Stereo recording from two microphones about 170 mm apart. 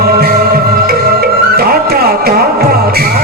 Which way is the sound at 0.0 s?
65° right (ahead or behind).